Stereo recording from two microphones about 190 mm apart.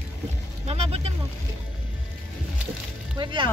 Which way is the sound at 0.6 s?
35° right (ahead or behind).